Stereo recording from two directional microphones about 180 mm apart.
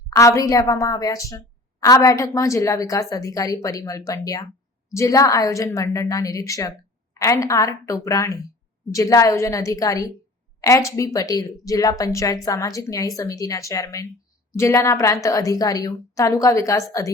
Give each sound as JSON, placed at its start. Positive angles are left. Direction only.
{"t": 0.1, "sound": "a woman's voice", "side_deg": 15}